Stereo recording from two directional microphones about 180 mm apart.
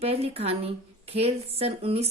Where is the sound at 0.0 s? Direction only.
35° right (ahead or behind).